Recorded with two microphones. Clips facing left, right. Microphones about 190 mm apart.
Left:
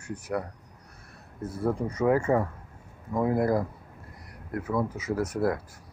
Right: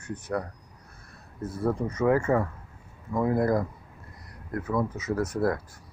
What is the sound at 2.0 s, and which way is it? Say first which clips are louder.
Speech: even; 15° left (ahead or behind).